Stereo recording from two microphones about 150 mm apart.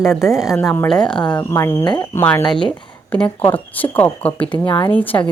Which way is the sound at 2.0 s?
15° left (ahead or behind).